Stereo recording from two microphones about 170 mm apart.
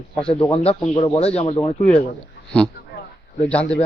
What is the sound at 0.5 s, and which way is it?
Speech, 35° left (ahead or behind).